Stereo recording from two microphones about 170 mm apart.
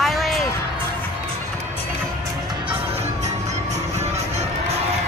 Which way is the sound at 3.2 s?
40° right (ahead or behind).